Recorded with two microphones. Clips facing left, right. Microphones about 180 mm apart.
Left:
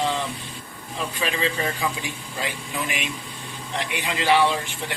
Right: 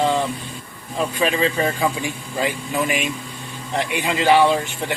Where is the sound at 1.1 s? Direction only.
50° right (ahead or behind).